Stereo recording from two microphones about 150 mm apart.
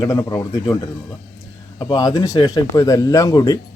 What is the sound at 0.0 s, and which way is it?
Speech, 25° left (ahead or behind).